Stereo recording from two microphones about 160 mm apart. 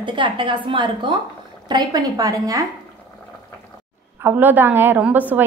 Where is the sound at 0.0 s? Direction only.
30° right (ahead or behind).